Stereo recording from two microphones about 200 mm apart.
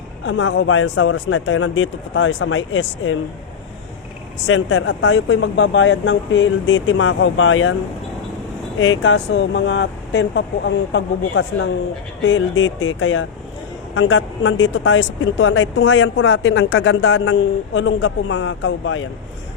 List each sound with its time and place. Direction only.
0.3 s speech: 65° left (ahead or behind)
4.4 s speech: 75° left (ahead or behind)
8.8 s speech: 70° left (ahead or behind)